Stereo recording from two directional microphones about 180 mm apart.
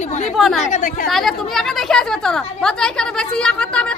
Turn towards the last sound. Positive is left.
turn(degrees=5)  # may be behind; listen again after turning